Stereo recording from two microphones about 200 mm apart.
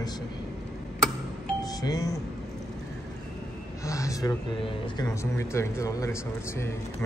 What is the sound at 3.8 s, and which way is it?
Speech, 15° left (ahead or behind).